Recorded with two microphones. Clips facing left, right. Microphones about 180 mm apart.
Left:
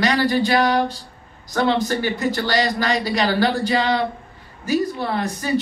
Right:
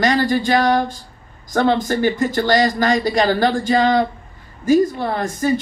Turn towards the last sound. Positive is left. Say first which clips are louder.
# right 3 dB
turn(degrees=-45)  # may be behind; listen again after turning